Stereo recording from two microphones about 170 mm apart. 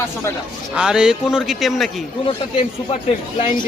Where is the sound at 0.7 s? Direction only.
5° right (ahead or behind).